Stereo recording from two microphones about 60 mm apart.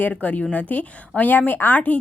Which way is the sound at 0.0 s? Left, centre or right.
Left.